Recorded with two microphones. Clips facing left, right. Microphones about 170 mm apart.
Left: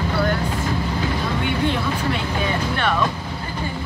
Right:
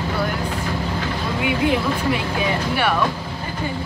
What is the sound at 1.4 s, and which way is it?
Speech, 10° right (ahead or behind).